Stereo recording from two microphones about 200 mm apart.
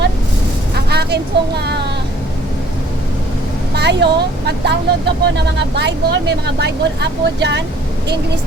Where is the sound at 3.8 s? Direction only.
60° right (ahead or behind).